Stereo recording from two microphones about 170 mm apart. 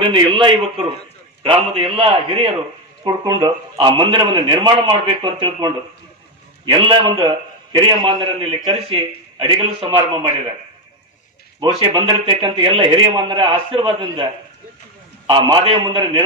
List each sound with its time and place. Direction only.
0.0 s a man's voice: 30° right (ahead or behind)
11.6 s a man's voice: 30° right (ahead or behind)
15.2 s a man's voice: 30° right (ahead or behind)